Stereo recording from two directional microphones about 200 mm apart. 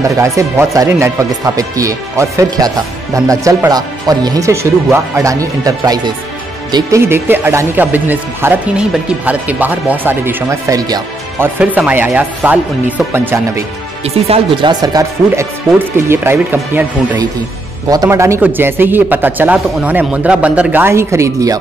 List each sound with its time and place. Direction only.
0.1 s speech: 15° right (ahead or behind)
14.0 s speech: 30° right (ahead or behind)